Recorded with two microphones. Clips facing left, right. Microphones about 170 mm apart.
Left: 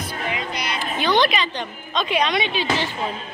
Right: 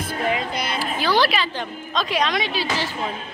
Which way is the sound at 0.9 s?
5° right (ahead or behind).